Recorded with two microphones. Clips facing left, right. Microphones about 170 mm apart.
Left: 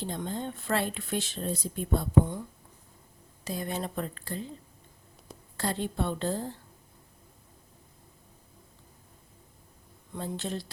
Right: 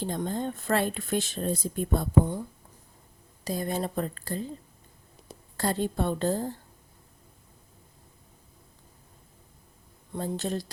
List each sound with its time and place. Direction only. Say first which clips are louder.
0.0 s speech: right 4 dB; 45° right (ahead or behind)
3.4 s speech: right 4 dB; 40° right (ahead or behind)
5.5 s speech: right 3 dB; 45° right (ahead or behind)
10.2 s speech: right 4 dB; 45° right (ahead or behind)